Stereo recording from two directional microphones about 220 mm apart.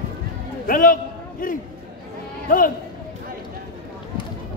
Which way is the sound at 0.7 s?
40° left (ahead or behind).